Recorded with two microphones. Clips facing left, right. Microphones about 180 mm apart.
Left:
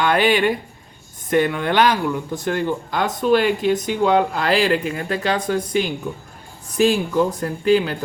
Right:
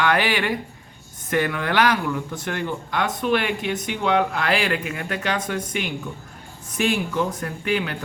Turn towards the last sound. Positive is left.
turn(degrees=30)  # may be behind; listen again after turning